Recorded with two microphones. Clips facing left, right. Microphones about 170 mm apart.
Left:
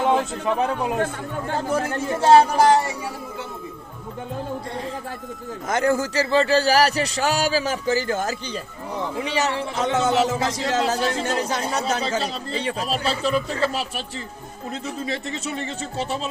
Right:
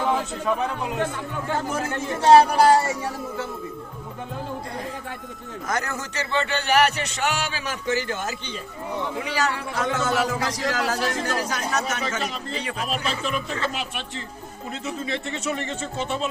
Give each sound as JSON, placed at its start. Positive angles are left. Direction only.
{"t": 1.7, "sound": "speech", "side_deg": 35}
{"t": 5.6, "sound": "a man's voice", "side_deg": 25}
{"t": 9.2, "sound": "a man's voice", "side_deg": 25}